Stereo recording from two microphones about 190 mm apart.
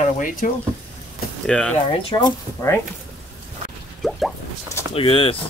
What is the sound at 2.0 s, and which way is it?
Speech, 20° left (ahead or behind).